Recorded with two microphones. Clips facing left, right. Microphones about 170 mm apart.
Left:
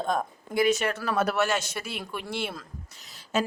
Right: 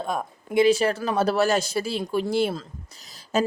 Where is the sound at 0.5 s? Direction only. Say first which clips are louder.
Right 5 dB; 30° right (ahead or behind).